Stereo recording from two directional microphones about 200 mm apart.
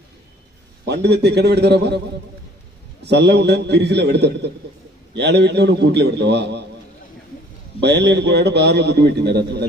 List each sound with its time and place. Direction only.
0.8 s a man's voice: 55° right (ahead or behind)
3.0 s a man's voice: 55° right (ahead or behind)
7.8 s a man's voice: 55° right (ahead or behind)